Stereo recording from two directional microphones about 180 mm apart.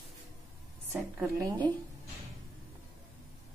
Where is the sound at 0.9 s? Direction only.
15° right (ahead or behind).